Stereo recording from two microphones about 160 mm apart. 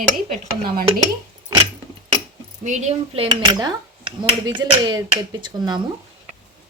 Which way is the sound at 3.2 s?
25° right (ahead or behind).